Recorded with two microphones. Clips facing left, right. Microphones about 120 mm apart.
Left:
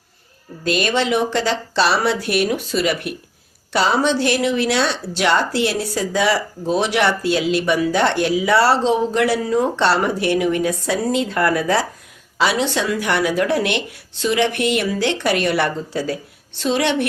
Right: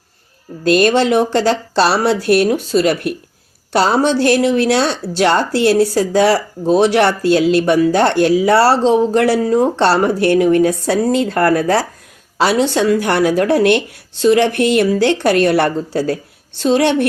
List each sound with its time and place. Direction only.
0.6 s a woman's voice: 45° right (ahead or behind)